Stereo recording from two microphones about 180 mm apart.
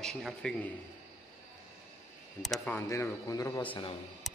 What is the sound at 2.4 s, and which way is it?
Speech, 5° left (ahead or behind).